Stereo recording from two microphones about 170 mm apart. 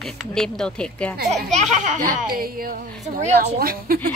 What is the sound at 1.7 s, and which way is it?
Speech, 45° right (ahead or behind).